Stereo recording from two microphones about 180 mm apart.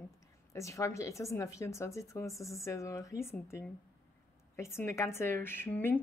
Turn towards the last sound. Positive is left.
turn(degrees=10)  # may be behind; listen again after turning